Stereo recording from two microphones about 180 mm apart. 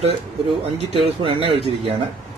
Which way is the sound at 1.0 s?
30° right (ahead or behind).